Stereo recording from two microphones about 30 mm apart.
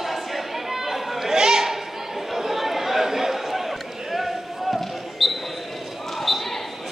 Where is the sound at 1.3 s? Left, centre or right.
Centre.